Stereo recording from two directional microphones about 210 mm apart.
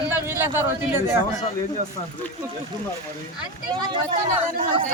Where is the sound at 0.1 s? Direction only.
10° right (ahead or behind).